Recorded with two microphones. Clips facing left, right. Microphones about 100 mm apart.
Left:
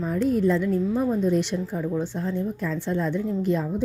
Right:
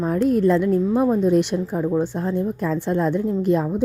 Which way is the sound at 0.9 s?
55° right (ahead or behind).